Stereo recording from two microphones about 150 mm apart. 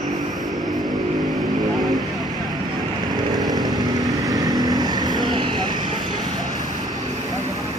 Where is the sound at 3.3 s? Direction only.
25° right (ahead or behind).